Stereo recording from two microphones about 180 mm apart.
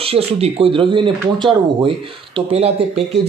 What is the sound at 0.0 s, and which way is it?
Speech, 30° right (ahead or behind).